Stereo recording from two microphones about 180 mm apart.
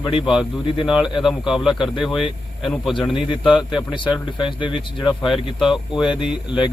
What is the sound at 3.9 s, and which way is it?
Speech, 25° left (ahead or behind).